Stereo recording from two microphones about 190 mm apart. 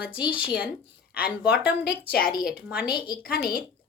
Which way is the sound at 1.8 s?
55° left (ahead or behind).